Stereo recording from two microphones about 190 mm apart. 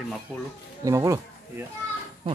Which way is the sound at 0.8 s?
15° right (ahead or behind).